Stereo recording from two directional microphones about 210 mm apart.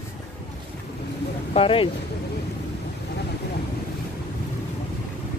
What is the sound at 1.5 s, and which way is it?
Speech, 25° left (ahead or behind).